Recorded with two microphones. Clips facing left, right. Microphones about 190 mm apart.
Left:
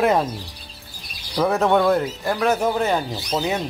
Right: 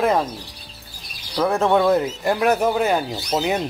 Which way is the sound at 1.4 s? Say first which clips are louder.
Even; centre (ahead or behind).